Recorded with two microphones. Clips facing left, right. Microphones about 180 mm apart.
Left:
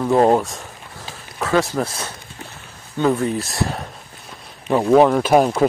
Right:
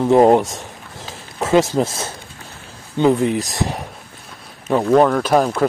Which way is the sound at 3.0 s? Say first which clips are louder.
Right 3 dB; 20° right (ahead or behind).